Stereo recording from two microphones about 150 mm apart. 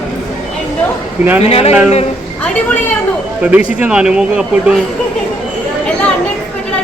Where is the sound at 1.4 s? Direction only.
45° left (ahead or behind).